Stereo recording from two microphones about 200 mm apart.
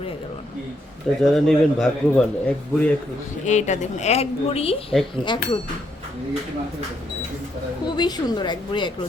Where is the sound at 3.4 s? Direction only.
35° left (ahead or behind).